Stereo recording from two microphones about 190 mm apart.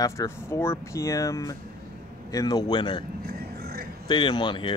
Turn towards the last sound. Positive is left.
turn(degrees=25)  # may be behind; listen again after turning